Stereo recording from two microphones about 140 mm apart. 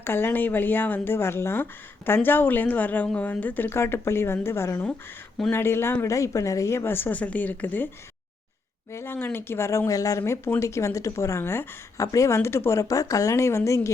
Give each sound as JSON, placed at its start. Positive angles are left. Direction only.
{"t": 0.0, "sound": "a woman's voice", "side_deg": 15}
{"t": 8.9, "sound": "speech", "side_deg": 15}